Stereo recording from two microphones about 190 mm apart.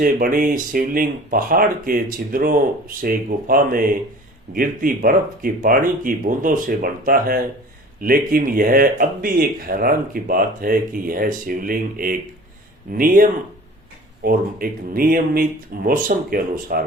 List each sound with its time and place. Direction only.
0.0 s speech: 45° right (ahead or behind)
14.3 s speech: 50° right (ahead or behind)